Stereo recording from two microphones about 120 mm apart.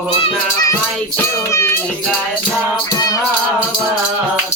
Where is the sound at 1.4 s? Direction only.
25° left (ahead or behind).